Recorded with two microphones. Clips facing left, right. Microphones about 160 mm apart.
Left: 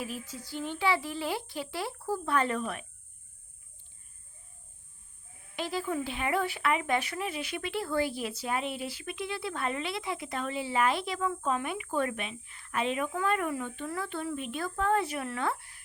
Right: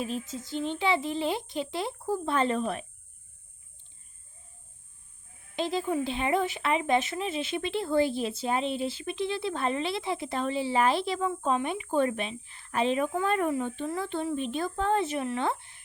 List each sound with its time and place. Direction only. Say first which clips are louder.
0.0 s speech: right 5 dB; 25° right (ahead or behind)
5.5 s speech: right 4 dB; 25° right (ahead or behind)